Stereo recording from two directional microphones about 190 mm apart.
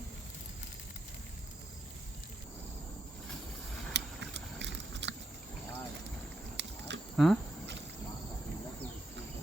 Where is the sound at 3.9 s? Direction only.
70° right (ahead or behind).